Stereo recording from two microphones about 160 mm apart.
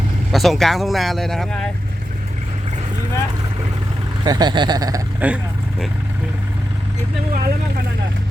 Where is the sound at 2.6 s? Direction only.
45° right (ahead or behind).